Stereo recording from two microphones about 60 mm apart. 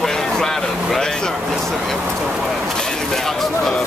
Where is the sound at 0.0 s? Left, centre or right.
Centre.